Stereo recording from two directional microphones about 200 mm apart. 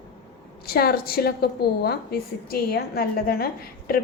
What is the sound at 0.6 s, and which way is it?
A woman's voice, 50° left (ahead or behind).